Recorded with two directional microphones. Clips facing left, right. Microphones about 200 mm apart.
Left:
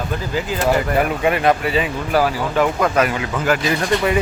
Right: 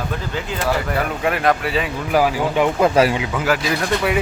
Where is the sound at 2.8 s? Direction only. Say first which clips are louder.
Right 3 dB; 30° right (ahead or behind).